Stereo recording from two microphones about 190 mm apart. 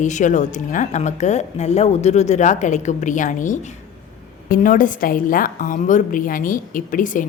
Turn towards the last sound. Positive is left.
turn(degrees=45)  # may be behind; listen again after turning